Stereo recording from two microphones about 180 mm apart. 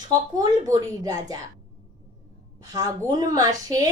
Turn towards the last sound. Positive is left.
turn(degrees=-20)  # may be behind; listen again after turning